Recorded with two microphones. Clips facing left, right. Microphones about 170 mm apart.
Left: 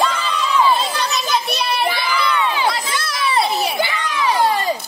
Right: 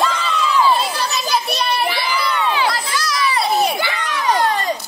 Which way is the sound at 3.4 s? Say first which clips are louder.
Right 1 dB; centre (ahead or behind).